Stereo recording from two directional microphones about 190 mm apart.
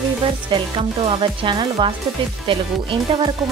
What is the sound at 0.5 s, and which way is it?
Speech, 25° right (ahead or behind).